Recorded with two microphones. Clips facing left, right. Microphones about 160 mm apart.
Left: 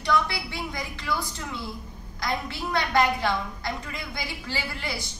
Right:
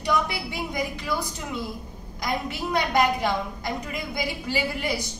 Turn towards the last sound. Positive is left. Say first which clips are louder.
# right 6 dB
turn(degrees=-15)  # may be behind; listen again after turning